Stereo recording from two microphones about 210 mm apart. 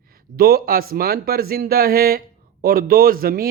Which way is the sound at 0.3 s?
45° right (ahead or behind).